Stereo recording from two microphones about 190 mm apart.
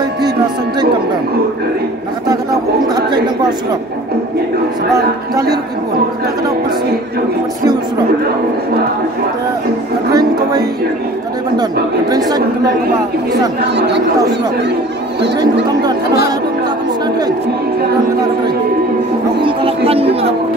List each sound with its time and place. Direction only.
2.9 s a sound: 20° right (ahead or behind)
4.9 s speech: 20° right (ahead or behind)
10.1 s music: 20° right (ahead or behind)
12.1 s speech: 20° right (ahead or behind)
13.7 s speech: 65° right (ahead or behind)
15.8 s speech: 20° right (ahead or behind)
19.4 s speech: 30° right (ahead or behind)